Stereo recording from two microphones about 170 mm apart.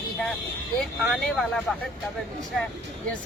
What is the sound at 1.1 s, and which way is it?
Speech, centre (ahead or behind).